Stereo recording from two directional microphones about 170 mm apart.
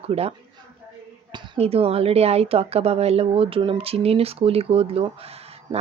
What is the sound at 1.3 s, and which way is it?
Speech, 35° right (ahead or behind).